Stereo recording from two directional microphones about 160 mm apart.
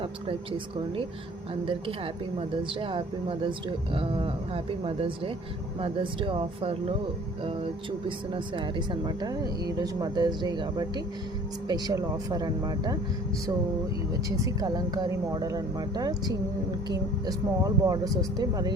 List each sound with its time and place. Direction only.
0.0 s speech: 35° right (ahead or behind)
2.8 s speech: 30° right (ahead or behind)
8.3 s speech: 30° right (ahead or behind)
14.3 s speech: 20° right (ahead or behind)